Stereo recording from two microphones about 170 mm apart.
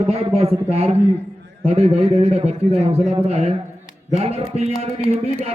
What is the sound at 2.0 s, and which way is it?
A man's voice, 40° right (ahead or behind).